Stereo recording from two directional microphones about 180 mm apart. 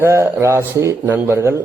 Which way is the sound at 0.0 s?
15° right (ahead or behind).